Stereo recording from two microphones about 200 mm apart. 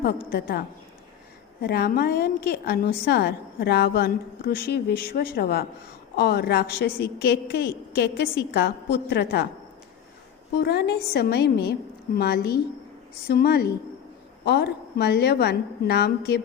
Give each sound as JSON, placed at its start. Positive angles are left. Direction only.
{"t": 0.0, "sound": "a woman's voice", "side_deg": 50}
{"t": 1.6, "sound": "a woman's voice", "side_deg": 50}
{"t": 10.6, "sound": "a woman's voice", "side_deg": 55}